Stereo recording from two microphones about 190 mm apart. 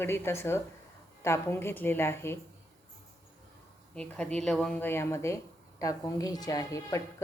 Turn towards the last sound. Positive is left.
turn(degrees=15)  # may be behind; listen again after turning